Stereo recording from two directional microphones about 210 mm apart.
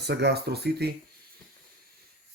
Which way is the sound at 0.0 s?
55° right (ahead or behind).